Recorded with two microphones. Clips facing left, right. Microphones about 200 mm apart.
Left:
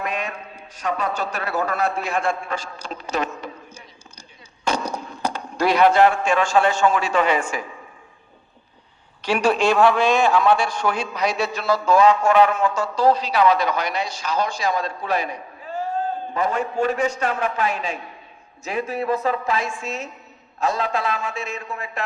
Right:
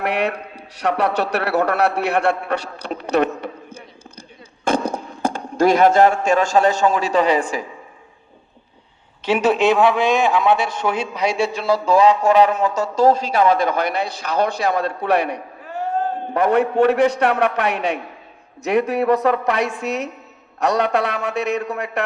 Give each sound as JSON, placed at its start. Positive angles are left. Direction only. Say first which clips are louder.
{"t": 0.0, "sound": "a man's voice", "louder": "right 7 dB", "side_deg": -70}
{"t": 9.2, "sound": "a man's voice", "louder": "right 3 dB", "side_deg": -20}